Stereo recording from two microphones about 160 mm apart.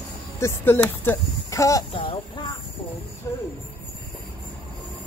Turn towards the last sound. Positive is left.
turn(degrees=20)  # may be behind; listen again after turning